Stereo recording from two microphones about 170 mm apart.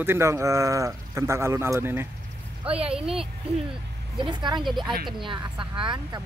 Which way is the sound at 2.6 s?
35° right (ahead or behind).